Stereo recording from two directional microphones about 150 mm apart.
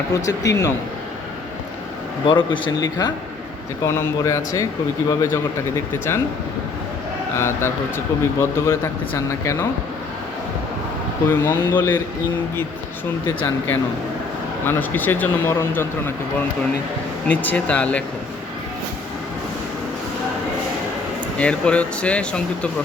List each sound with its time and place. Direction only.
0.1 s speech: 20° left (ahead or behind)
2.2 s speech: 35° left (ahead or behind); by 6.2 s 15° left (ahead or behind)
7.3 s speech: 15° left (ahead or behind)
11.3 s speech: 15° left (ahead or behind)
14.6 s speech: 15° left (ahead or behind)
17.2 s speech: 10° left (ahead or behind)
21.3 s speech: 10° left (ahead or behind)